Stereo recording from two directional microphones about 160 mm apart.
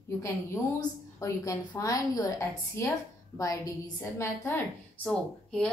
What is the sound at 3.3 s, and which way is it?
A woman's voice, 20° left (ahead or behind).